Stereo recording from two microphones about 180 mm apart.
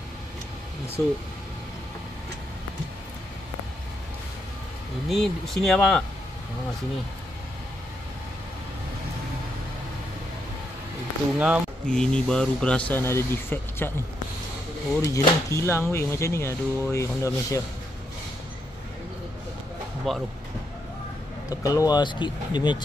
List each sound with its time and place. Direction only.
1.0 s speech: 15° left (ahead or behind)
5.0 s speech: centre (ahead or behind)
11.3 s speech: 10° right (ahead or behind)
11.9 s speech: 5° left (ahead or behind)
15.0 s speech: 15° left (ahead or behind)
20.1 s speech: centre (ahead or behind)
21.5 s speech: 20° left (ahead or behind)